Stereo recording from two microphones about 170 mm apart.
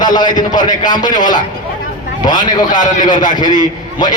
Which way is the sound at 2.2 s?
25° left (ahead or behind).